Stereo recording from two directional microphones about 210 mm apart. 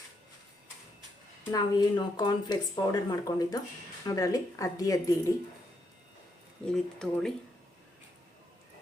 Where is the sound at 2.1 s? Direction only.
20° left (ahead or behind).